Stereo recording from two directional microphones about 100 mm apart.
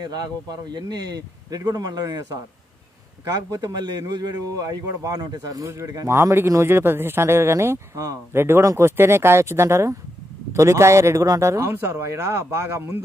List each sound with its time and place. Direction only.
0.0 s speech: 40° right (ahead or behind)
3.4 s speech: 35° right (ahead or behind)